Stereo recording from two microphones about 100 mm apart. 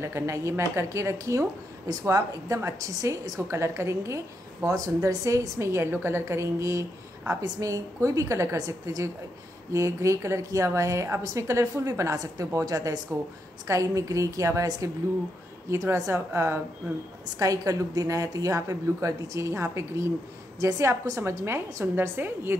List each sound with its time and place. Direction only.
0.0 s a woman's voice: 30° right (ahead or behind)